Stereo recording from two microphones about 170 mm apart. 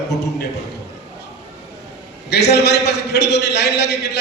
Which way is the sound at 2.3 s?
80° left.